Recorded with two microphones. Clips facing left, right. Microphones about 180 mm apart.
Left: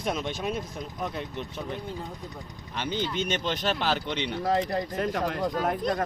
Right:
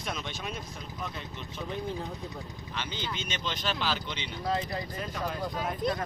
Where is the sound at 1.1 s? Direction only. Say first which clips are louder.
Left 7 dB; 60° left (ahead or behind).